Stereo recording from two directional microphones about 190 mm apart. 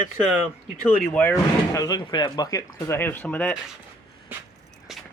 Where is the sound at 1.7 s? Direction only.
20° left (ahead or behind).